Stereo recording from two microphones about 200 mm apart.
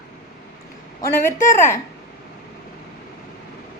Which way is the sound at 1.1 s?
10° left (ahead or behind).